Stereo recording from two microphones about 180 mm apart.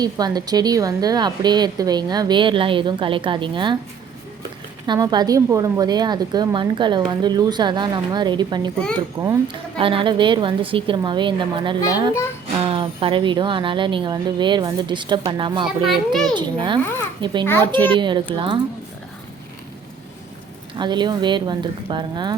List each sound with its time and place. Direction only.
0.0 s a woman's voice: 20° right (ahead or behind)
4.9 s a woman's voice: 20° right (ahead or behind)
9.7 s a woman's voice: 30° right (ahead or behind)
15.9 s a child's voice: centre (ahead or behind)
16.3 s a woman's voice: 25° right (ahead or behind)
20.7 s a woman's voice: 25° right (ahead or behind)